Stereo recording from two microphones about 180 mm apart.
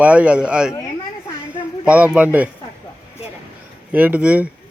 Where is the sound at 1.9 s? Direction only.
5° right (ahead or behind).